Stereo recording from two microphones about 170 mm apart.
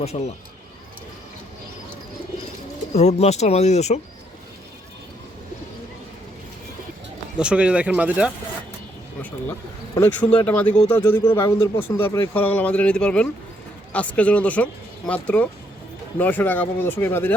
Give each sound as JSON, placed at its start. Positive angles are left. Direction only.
{"t": 0.0, "sound": "speech", "side_deg": 40}
{"t": 2.9, "sound": "speech", "side_deg": 40}
{"t": 7.3, "sound": "speech", "side_deg": -5}
{"t": 9.2, "sound": "a man's voice", "side_deg": 15}